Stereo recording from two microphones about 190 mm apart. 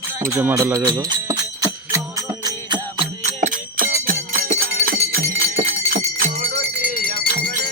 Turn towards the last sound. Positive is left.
turn(degrees=-35)  # may be behind; listen again after turning